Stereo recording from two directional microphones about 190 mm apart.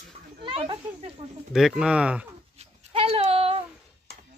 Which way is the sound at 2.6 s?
30° right (ahead or behind).